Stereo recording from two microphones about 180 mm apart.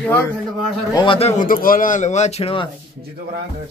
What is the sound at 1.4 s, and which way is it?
Speech, 50° left (ahead or behind).